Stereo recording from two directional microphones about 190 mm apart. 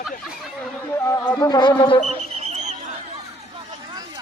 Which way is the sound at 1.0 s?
15° left (ahead or behind).